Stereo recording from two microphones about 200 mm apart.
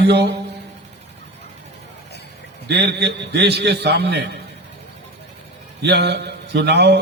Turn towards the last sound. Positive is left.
turn(degrees=-55)  # may be behind; listen again after turning